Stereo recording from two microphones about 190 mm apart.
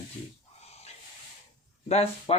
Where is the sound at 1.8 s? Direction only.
35° left (ahead or behind).